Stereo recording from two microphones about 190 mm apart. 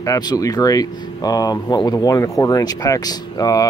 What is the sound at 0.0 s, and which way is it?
Speech, 20° left (ahead or behind).